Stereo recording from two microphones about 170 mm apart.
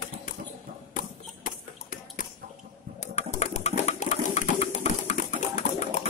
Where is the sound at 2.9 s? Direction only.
40° left (ahead or behind).